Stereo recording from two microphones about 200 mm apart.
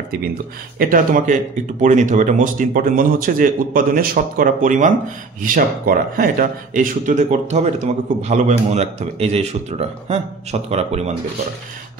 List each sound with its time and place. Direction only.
0.1 s speech: 50° right (ahead or behind); by 11.1 s 30° right (ahead or behind)